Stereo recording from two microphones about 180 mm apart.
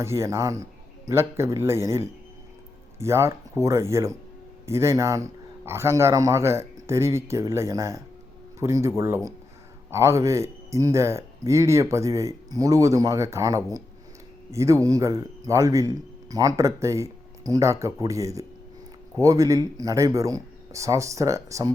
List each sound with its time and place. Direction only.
0.0 s speech: 15° right (ahead or behind)